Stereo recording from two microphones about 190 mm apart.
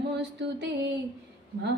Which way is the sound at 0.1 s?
65° right (ahead or behind).